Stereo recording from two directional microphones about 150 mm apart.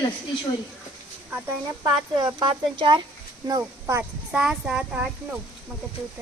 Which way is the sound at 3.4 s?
20° right (ahead or behind).